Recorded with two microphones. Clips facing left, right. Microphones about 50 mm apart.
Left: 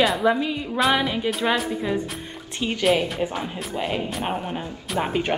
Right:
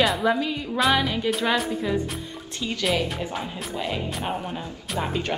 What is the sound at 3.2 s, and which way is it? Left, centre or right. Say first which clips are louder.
Speech: left 3 dB; left.